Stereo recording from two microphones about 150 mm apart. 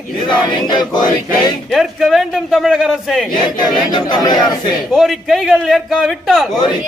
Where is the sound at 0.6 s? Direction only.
30° left (ahead or behind).